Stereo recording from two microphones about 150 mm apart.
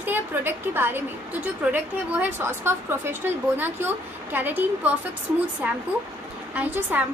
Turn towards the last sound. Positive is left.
turn(degrees=-10)  # may be behind; listen again after turning